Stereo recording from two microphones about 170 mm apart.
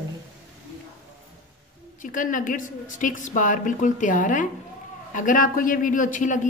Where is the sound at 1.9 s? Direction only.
50° left (ahead or behind).